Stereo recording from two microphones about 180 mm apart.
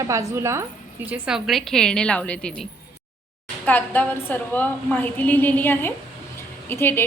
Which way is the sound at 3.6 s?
10° left (ahead or behind).